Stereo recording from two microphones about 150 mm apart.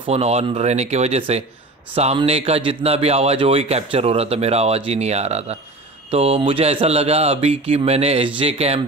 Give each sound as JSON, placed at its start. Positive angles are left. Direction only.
{"t": 0.0, "sound": "mantra", "side_deg": -45}
{"t": 2.1, "sound": "a man's voice", "side_deg": -40}
{"t": 6.0, "sound": "mantra", "side_deg": -40}
{"t": 8.4, "sound": "a man's voice", "side_deg": -40}